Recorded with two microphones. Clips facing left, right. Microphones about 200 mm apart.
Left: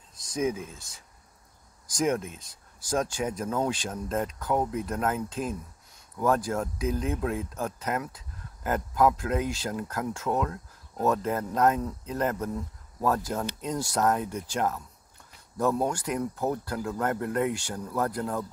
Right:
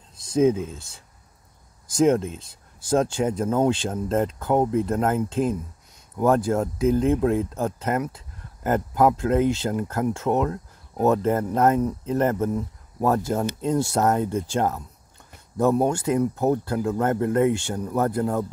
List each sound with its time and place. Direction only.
0.2 s speech: 25° right (ahead or behind)